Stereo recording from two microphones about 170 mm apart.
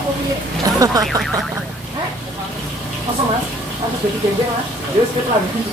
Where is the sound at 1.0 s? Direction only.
Centre (ahead or behind).